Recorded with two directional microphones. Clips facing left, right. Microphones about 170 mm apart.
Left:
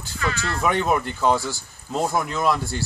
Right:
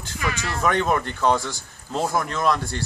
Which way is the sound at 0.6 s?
5° left (ahead or behind).